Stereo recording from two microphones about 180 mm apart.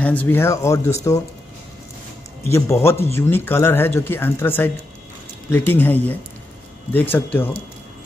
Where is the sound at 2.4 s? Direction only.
15° left (ahead or behind).